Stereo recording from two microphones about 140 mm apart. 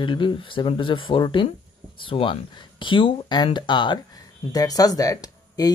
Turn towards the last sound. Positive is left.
turn(degrees=25)  # may be behind; listen again after turning